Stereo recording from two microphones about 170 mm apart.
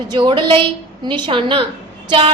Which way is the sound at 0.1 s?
25° right (ahead or behind).